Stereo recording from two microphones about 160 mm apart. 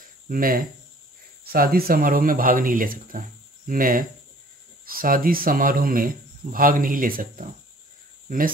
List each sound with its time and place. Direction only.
0.3 s speech: 65° right (ahead or behind)
5.0 s speech: 60° right (ahead or behind)